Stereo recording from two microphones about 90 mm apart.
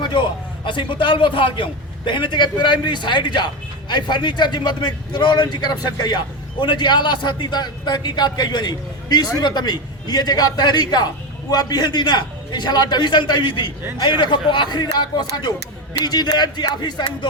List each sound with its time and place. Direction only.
0.0 s a man's voice: 65° left (ahead or behind)